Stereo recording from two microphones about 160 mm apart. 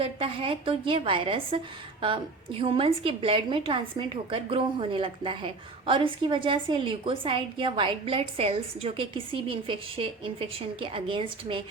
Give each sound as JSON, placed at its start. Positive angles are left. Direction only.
{"t": 0.0, "sound": "a woman's voice", "side_deg": -35}